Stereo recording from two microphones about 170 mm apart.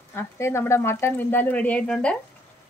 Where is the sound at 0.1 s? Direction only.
15° left (ahead or behind).